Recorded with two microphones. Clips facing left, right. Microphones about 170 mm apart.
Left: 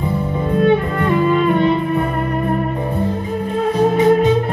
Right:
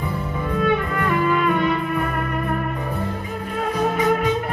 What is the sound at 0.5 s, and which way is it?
Music, 30° left (ahead or behind).